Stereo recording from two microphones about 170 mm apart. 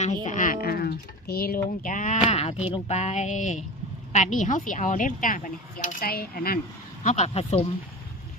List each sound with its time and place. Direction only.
0.3 s speech: 50° left (ahead or behind)
7.0 s speech: 45° left (ahead or behind)